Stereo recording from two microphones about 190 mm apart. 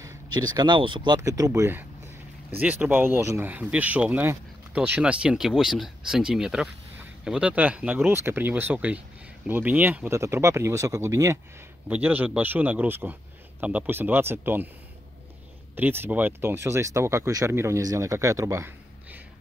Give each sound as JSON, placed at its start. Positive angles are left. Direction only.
{"t": 0.4, "sound": "speech", "side_deg": -20}
{"t": 15.7, "sound": "speech", "side_deg": -10}